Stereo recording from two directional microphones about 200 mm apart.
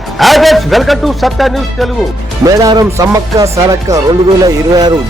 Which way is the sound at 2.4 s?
20° right (ahead or behind).